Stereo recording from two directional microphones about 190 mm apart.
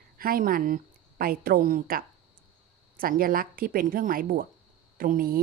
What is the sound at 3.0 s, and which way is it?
Speech, 50° right (ahead or behind).